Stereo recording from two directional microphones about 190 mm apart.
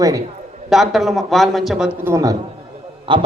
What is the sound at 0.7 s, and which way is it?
A man's voice, centre (ahead or behind).